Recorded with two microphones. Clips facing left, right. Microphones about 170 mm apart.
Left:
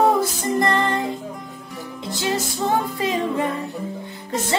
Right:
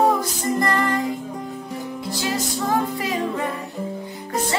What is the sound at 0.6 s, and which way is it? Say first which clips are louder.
Music: left 2 dB; 25° left (ahead or behind).